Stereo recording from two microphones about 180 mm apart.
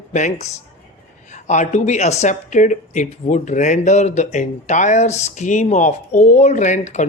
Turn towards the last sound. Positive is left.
turn(degrees=40)  # may be behind; listen again after turning